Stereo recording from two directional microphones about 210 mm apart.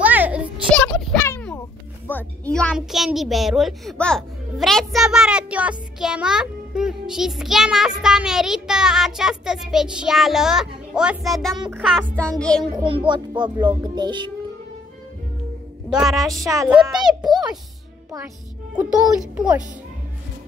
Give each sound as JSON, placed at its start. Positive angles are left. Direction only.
{"t": 0.0, "sound": "a sound", "side_deg": -5}
{"t": 0.7, "sound": "a sound", "side_deg": 5}
{"t": 2.0, "sound": "a woman's voice", "side_deg": 5}
{"t": 12.7, "sound": "speech", "side_deg": -25}
{"t": 15.9, "sound": "a woman's voice", "side_deg": 0}
{"t": 18.8, "sound": "a woman's voice", "side_deg": -5}